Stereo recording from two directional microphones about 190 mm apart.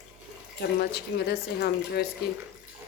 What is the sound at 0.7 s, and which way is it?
Speech, 60° left (ahead or behind).